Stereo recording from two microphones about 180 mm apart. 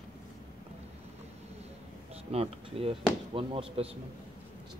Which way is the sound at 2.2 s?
35° right (ahead or behind).